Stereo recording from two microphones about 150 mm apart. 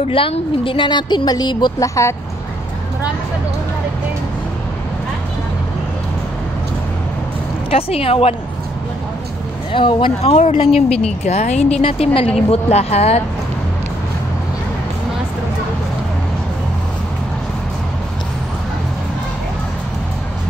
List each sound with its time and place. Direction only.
0.1 s a woman's voice: 35° left (ahead or behind); by 2.1 s 20° left (ahead or behind)
7.7 s speech: 40° left (ahead or behind)
9.7 s speech: 35° left (ahead or behind)